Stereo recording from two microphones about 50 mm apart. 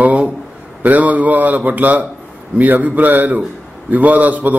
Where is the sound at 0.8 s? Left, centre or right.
Right.